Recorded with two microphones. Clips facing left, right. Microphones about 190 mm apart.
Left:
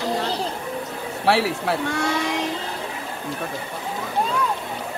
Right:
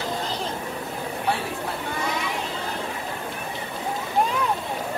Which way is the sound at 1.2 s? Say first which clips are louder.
Left 9 dB; 85° left.